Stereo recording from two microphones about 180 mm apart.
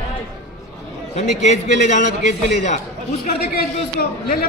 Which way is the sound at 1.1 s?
40° left (ahead or behind).